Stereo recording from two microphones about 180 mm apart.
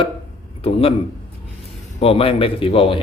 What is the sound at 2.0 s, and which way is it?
Speech, 30° left (ahead or behind).